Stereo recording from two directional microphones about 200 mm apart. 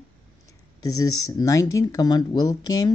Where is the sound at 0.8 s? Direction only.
20° left (ahead or behind).